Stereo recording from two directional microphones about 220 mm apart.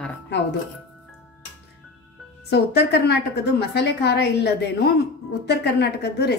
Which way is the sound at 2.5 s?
50° left (ahead or behind).